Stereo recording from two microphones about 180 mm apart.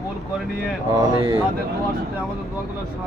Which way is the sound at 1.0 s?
25° right (ahead or behind).